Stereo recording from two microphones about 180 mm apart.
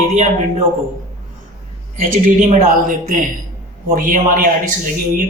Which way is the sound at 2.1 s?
45° right (ahead or behind).